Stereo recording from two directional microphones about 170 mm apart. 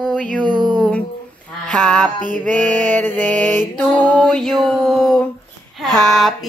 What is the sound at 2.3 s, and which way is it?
Mantra, 45° right (ahead or behind).